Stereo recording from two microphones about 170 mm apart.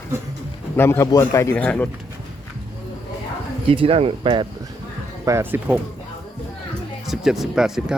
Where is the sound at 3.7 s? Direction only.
35° right (ahead or behind).